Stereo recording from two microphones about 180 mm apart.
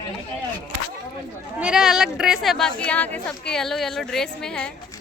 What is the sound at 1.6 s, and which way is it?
Speech, 5° right (ahead or behind).